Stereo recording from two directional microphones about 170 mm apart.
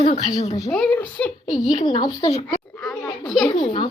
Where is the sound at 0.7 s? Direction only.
5° left (ahead or behind).